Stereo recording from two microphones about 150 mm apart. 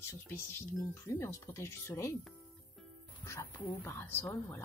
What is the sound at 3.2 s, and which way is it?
Speech, 15° left (ahead or behind).